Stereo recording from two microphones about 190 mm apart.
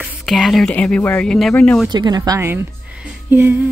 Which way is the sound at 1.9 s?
20° right (ahead or behind).